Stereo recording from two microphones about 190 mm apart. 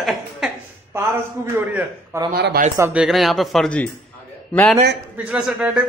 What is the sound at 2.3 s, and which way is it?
Speech, 55° right (ahead or behind).